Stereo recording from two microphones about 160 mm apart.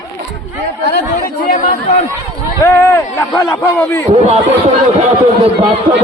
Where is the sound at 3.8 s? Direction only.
15° left (ahead or behind).